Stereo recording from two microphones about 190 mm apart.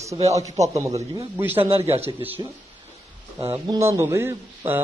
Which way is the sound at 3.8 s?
15° right (ahead or behind).